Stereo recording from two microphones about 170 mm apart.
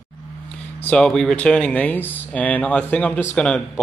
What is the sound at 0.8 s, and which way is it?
Speech, 5° left (ahead or behind).